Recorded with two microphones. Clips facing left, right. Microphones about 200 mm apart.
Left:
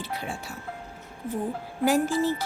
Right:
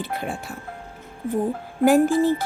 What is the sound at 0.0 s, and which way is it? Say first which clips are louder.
Speech: right 5 dB; 55° right (ahead or behind).